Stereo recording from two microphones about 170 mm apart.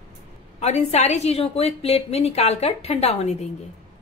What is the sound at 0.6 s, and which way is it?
A woman's voice, 40° left (ahead or behind).